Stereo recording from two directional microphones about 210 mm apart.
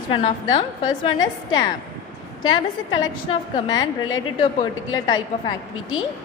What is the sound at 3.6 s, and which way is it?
A woman's voice, 20° left (ahead or behind).